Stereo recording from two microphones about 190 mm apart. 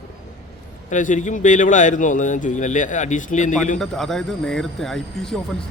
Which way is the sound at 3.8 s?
Centre (ahead or behind).